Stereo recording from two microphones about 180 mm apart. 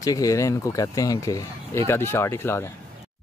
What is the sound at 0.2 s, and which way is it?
Speech, 20° left (ahead or behind).